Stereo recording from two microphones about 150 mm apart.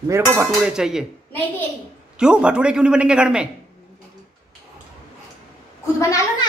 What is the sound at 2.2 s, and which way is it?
Speech, 5° right (ahead or behind).